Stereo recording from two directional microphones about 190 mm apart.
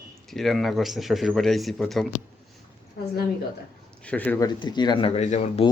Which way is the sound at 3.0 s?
55° left (ahead or behind).